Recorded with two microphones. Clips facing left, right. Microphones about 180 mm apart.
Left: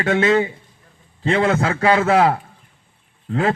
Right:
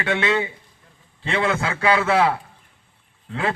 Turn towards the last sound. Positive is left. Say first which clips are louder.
# left 5 dB
turn(degrees=40)  # may be behind; listen again after turning